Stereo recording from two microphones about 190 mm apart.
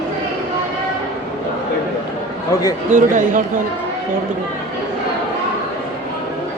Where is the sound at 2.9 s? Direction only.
40° right (ahead or behind).